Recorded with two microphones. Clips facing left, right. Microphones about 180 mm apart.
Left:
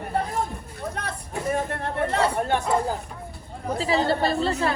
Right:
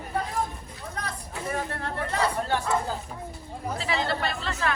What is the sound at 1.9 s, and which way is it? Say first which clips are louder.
Speech: left 7 dB; 60° left (ahead or behind).